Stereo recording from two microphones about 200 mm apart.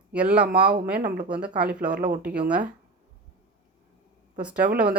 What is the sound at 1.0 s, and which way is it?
Speech, 40° right (ahead or behind).